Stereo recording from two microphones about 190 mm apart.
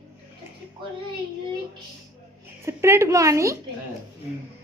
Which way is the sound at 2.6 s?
15° right (ahead or behind).